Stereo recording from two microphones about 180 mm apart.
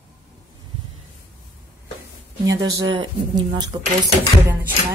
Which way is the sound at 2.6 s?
20° right (ahead or behind).